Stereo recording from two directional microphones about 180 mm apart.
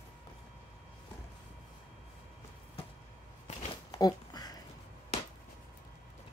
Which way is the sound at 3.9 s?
20° left (ahead or behind).